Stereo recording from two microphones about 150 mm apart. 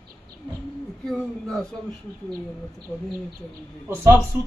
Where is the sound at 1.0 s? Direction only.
5° left (ahead or behind).